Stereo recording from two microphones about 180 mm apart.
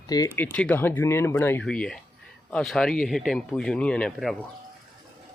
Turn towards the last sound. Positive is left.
turn(degrees=0)  # may be behind; listen again after turning